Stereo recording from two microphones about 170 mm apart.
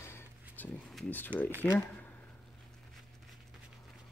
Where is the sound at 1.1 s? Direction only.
10° left (ahead or behind).